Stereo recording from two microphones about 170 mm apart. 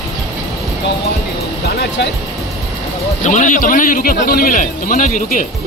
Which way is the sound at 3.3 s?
50° left (ahead or behind).